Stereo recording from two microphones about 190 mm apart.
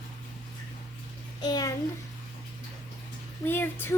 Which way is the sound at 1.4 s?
20° left (ahead or behind).